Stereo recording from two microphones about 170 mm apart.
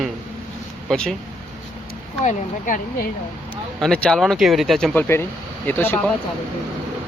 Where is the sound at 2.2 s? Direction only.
50° left (ahead or behind).